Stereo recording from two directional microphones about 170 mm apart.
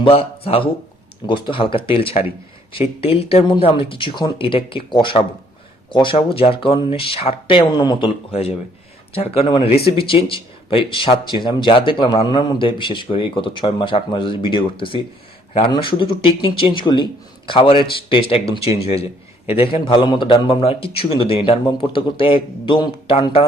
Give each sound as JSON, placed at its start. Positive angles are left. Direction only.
{"t": 0.0, "sound": "a man's voice", "side_deg": 35}